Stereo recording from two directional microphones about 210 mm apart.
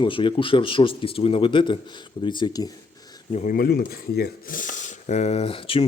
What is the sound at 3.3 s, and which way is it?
Speech, 40° left (ahead or behind).